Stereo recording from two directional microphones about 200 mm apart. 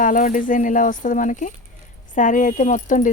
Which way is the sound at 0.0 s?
40° left (ahead or behind).